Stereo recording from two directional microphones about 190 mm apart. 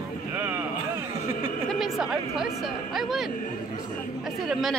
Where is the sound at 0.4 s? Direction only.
15° right (ahead or behind).